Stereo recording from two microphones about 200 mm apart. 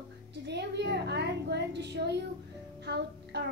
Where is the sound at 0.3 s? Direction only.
60° right (ahead or behind).